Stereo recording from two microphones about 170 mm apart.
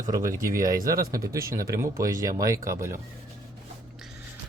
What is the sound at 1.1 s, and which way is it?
Speech, 20° right (ahead or behind).